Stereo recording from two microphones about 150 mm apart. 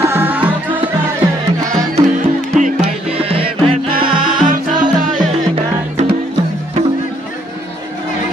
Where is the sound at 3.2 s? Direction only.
40° right (ahead or behind).